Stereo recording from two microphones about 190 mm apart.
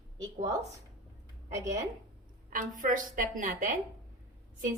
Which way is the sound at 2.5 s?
45° right (ahead or behind).